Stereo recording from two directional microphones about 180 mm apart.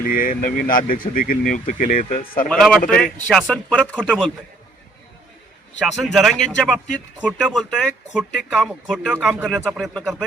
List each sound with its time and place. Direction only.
0.0 s speech: 50° left (ahead or behind)
2.5 s speech: centre (ahead or behind)
6.0 s speech: centre (ahead or behind)